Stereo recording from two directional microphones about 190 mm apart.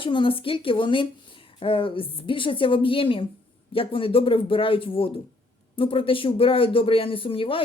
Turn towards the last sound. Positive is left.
turn(degrees=30)  # may be behind; listen again after turning